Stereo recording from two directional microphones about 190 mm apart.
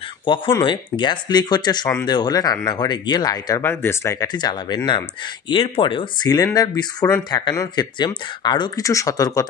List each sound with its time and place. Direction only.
0.3 s speech: 25° left (ahead or behind)